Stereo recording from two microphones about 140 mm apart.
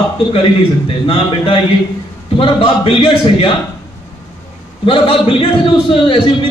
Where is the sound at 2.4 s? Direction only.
40° left (ahead or behind).